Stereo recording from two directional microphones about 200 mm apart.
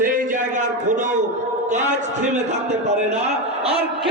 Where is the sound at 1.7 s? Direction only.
35° right (ahead or behind).